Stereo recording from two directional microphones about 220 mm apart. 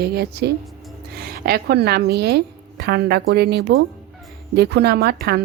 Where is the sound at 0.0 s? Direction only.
45° right (ahead or behind).